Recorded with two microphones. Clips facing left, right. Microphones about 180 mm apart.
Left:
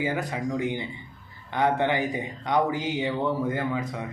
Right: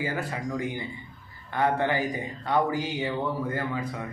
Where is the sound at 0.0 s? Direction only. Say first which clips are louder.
Left 3 dB; 15° left (ahead or behind).